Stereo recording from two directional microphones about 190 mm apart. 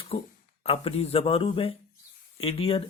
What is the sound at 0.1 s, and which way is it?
Speech, 30° left (ahead or behind).